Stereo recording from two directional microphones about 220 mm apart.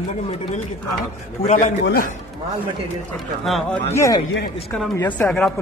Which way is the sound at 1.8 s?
45° left (ahead or behind).